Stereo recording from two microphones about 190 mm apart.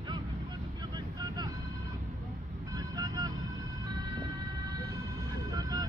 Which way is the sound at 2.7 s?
20° right (ahead or behind).